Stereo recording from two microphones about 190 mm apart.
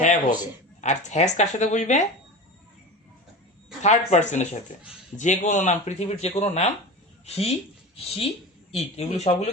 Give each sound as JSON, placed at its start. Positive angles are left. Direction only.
{"t": 0.0, "sound": "speech", "side_deg": 40}
{"t": 3.8, "sound": "speech", "side_deg": 40}
{"t": 8.7, "sound": "speech", "side_deg": 35}